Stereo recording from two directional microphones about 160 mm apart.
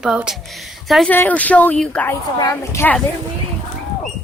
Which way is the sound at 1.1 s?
10° left (ahead or behind).